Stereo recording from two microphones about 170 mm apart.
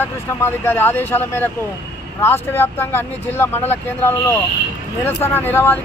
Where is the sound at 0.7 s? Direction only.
15° left (ahead or behind).